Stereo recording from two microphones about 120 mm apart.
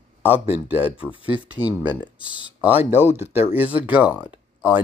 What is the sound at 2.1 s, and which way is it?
Speech, 40° left (ahead or behind).